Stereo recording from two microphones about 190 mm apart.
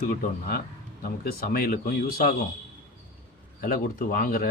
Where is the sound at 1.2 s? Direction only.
50° left (ahead or behind).